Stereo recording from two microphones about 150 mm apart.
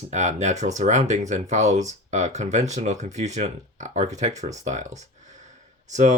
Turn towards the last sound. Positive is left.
turn(degrees=-55)  # may be behind; listen again after turning